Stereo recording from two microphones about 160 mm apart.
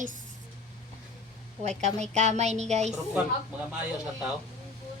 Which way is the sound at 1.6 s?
45° right (ahead or behind).